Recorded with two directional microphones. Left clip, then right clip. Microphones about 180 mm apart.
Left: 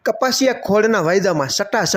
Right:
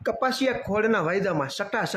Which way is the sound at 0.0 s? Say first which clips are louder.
Left 8 dB; 25° left (ahead or behind).